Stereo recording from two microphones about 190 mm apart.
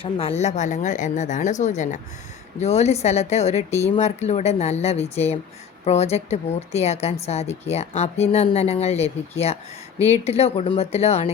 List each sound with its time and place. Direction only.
0.0 s speech: 30° left (ahead or behind)